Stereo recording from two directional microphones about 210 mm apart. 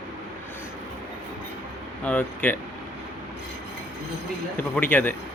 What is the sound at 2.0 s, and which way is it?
Speech, 5° left (ahead or behind).